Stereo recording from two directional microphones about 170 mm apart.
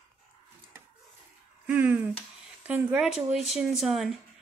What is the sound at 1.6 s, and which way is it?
Speech, 10° right (ahead or behind).